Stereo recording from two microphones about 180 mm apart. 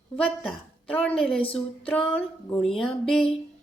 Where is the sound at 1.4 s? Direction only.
30° left (ahead or behind).